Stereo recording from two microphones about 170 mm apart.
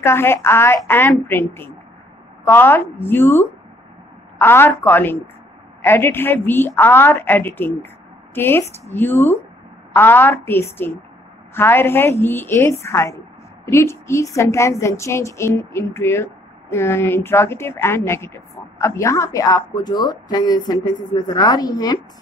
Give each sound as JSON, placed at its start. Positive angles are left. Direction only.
{"t": 0.0, "sound": "a woman's voice", "side_deg": 15}